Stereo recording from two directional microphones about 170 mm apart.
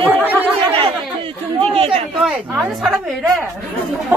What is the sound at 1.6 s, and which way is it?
Speech, 35° right (ahead or behind).